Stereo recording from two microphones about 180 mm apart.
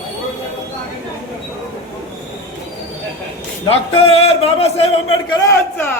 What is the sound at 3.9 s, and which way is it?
A man's voice, 35° left (ahead or behind).